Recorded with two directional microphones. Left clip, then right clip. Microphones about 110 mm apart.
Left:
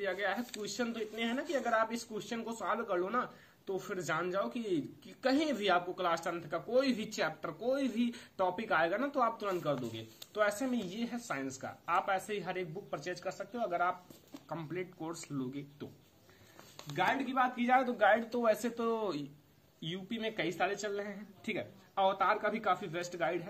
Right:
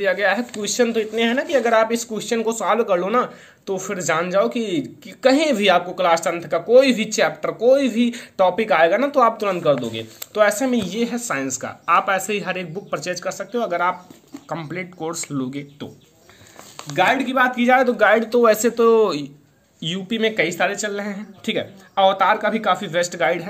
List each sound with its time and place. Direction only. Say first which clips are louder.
0.0 s speech: right 17 dB; 25° right (ahead or behind)
16.9 s speech: right 15 dB; 5° right (ahead or behind)
17.6 s speech: right 14 dB; 15° right (ahead or behind)
19.8 s speech: right 18 dB; 30° right (ahead or behind)